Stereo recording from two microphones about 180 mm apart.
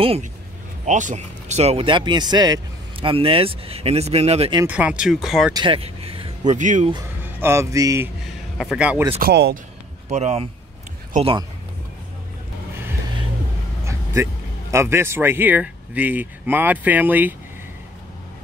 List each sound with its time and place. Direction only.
0.0 s speech: 35° right (ahead or behind)
0.8 s speech: 45° right (ahead or behind)
4.6 s speech: 10° right (ahead or behind)
5.5 s speech: 25° right (ahead or behind); by 6.9 s 45° right (ahead or behind)
7.3 s speech: 15° right (ahead or behind)
8.5 s speech: 5° right (ahead or behind)
9.2 s speech: 60° right (ahead or behind)
10.0 s speech: 40° right (ahead or behind)
13.8 s speech: 15° right (ahead or behind)